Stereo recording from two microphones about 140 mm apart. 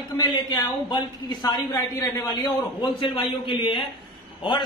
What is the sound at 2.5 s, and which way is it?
A man's voice, 30° left (ahead or behind).